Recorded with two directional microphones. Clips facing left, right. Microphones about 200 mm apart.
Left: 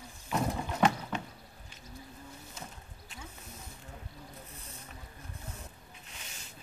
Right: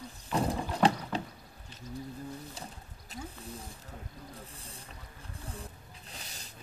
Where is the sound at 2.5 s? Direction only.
35° right (ahead or behind).